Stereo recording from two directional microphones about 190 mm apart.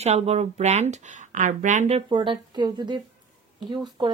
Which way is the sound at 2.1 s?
25° right (ahead or behind).